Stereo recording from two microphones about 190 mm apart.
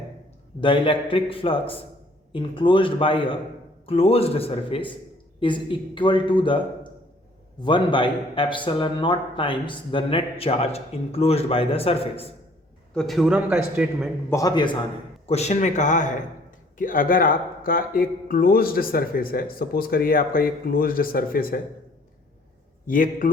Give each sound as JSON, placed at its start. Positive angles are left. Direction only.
{"t": 0.6, "sound": "a man's voice", "side_deg": 25}
{"t": 7.6, "sound": "a man's voice", "side_deg": 25}
{"t": 12.9, "sound": "a man's voice", "side_deg": 0}
{"t": 14.3, "sound": "a man's voice", "side_deg": 20}
{"t": 15.3, "sound": "a man's voice", "side_deg": 35}
{"t": 22.9, "sound": "speech", "side_deg": 45}